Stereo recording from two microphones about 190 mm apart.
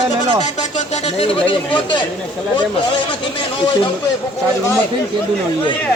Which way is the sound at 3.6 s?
25° left (ahead or behind).